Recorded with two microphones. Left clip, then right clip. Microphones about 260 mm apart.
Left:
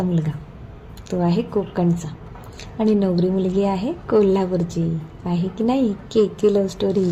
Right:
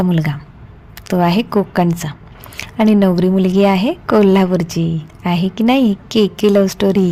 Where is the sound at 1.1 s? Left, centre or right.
Right.